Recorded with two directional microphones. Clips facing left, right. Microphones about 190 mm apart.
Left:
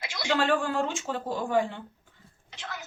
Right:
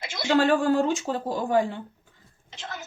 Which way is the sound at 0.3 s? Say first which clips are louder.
Right 6 dB; 40° right (ahead or behind).